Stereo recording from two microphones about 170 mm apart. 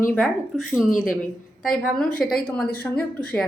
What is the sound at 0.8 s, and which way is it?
Speech, 50° left (ahead or behind).